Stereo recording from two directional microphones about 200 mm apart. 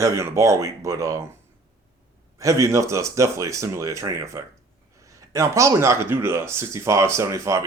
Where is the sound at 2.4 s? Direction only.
15° right (ahead or behind).